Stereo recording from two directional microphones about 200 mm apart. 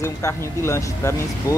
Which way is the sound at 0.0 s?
15° left (ahead or behind).